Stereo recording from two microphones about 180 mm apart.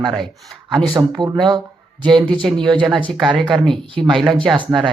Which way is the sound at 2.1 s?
5° left (ahead or behind).